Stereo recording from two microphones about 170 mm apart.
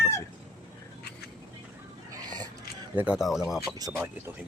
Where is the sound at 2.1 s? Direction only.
25° right (ahead or behind).